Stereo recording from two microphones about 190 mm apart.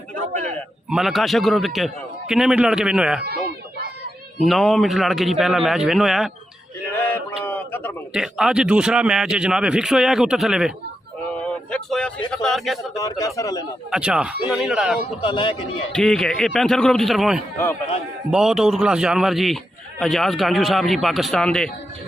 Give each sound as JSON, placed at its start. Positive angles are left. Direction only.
{"t": 0.8, "sound": "a man's voice", "side_deg": 0}
{"t": 3.3, "sound": "a sound", "side_deg": -55}
{"t": 4.4, "sound": "a man's voice", "side_deg": 0}
{"t": 7.4, "sound": "a sound", "side_deg": 10}
{"t": 8.1, "sound": "a man's voice", "side_deg": -5}
{"t": 11.3, "sound": "a sound", "side_deg": 5}
{"t": 12.3, "sound": "a man's voice", "side_deg": 5}
{"t": 13.0, "sound": "a man's voice", "side_deg": 15}
{"t": 13.8, "sound": "a man's voice", "side_deg": -5}
{"t": 15.2, "sound": "speech", "side_deg": 25}
{"t": 15.9, "sound": "a man's voice", "side_deg": 5}